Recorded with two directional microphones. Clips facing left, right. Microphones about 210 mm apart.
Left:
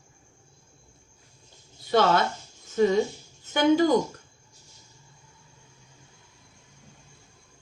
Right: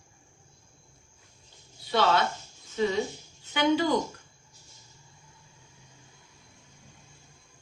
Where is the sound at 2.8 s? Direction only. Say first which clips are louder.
Left 6 dB; 45° left (ahead or behind).